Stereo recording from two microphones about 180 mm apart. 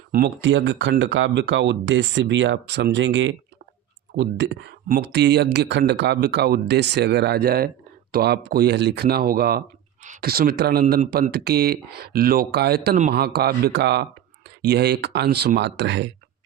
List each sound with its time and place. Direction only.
0.4 s speech: 90° right
4.1 s speech: 75° right (ahead or behind)